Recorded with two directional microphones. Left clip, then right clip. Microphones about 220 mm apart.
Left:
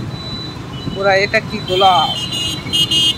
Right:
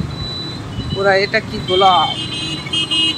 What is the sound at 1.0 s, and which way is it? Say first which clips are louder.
Speech: left 1 dB; 5° left (ahead or behind).